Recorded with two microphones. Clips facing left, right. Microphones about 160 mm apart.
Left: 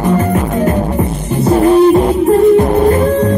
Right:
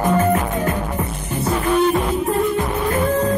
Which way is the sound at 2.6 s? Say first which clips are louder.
Left 11 dB; 50° left (ahead or behind).